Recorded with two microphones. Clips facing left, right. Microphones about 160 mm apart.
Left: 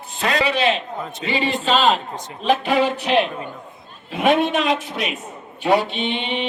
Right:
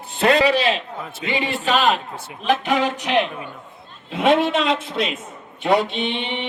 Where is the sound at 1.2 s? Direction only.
15° right (ahead or behind).